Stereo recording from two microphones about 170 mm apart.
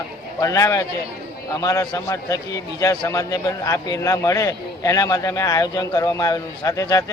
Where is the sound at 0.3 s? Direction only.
20° left (ahead or behind).